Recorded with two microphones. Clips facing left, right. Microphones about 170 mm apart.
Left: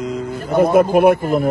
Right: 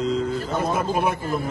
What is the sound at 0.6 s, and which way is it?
Speech, 60° left (ahead or behind).